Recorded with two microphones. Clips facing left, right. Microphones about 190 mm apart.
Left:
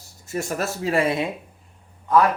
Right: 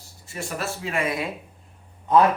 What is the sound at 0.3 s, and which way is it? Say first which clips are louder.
Speech: left 5 dB; 45° left (ahead or behind).